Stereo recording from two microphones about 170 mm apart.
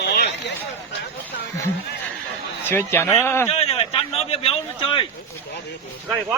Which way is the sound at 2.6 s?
15° left (ahead or behind).